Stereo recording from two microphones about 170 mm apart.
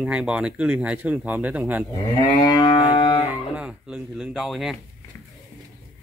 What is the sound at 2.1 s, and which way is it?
Livestock, 25° left (ahead or behind).